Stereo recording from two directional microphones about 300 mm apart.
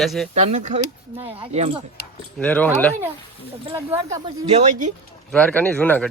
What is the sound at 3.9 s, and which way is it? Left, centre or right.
Speech, centre.